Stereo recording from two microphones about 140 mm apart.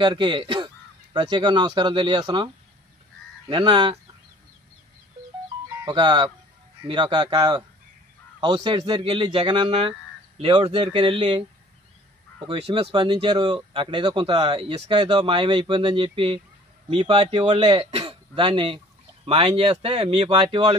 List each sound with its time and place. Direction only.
0.0 s speech: 35° right (ahead or behind)
5.9 s speech: 35° right (ahead or behind)
12.4 s speech: 40° right (ahead or behind)
12.9 s speech: 35° right (ahead or behind)